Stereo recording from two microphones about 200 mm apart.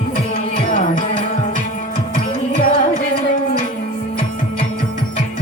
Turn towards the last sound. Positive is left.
turn(degrees=45)  # may be behind; listen again after turning